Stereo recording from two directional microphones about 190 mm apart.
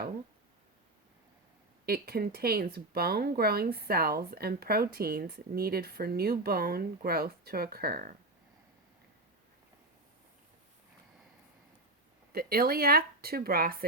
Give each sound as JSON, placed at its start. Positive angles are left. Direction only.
{"t": 1.9, "sound": "speech", "side_deg": -55}
{"t": 12.3, "sound": "speech", "side_deg": -50}